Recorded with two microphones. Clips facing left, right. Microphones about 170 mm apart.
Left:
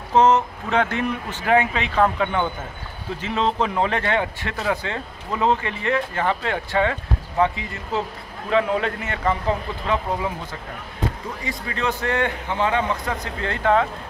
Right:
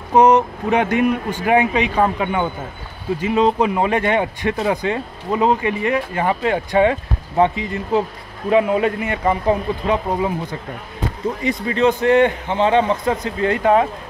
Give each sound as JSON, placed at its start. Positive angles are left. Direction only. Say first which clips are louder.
{"t": 0.1, "sound": "speech", "louder": "right 4 dB", "side_deg": -15}
{"t": 11.4, "sound": "a man's voice", "louder": "right 9 dB", "side_deg": -20}